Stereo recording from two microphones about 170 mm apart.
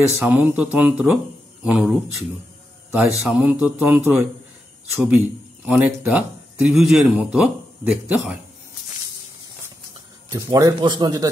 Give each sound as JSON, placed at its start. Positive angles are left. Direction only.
{"t": 0.2, "sound": "speech", "side_deg": -10}
{"t": 10.3, "sound": "a man's voice", "side_deg": -20}